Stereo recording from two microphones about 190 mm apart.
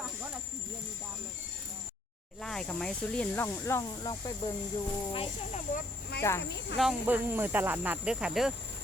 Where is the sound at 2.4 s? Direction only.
5° left (ahead or behind); by 4.5 s 20° left (ahead or behind).